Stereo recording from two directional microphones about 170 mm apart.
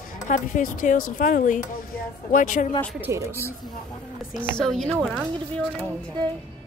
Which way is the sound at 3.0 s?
15° right (ahead or behind).